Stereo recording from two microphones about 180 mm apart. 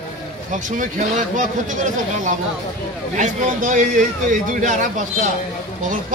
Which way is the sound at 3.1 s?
45° right (ahead or behind).